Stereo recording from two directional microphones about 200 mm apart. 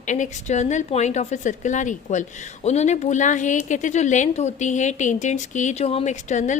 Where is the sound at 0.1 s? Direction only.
35° left (ahead or behind).